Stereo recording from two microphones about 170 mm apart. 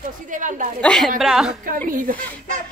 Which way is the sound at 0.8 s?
5° left (ahead or behind).